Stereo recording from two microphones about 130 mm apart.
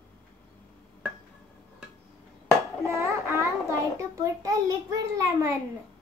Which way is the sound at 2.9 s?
20° right (ahead or behind).